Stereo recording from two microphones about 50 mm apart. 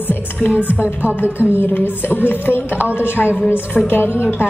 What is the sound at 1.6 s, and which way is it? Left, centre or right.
A woman's voice, left.